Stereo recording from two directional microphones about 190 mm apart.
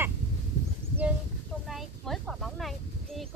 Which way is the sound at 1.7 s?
Centre (ahead or behind).